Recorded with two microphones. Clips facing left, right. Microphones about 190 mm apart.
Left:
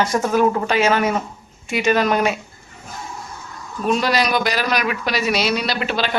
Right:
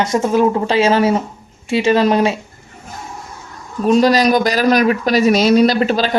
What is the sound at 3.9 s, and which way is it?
Speech, 40° right (ahead or behind).